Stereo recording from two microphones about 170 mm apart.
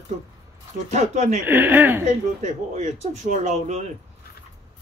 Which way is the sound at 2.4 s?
45° right (ahead or behind).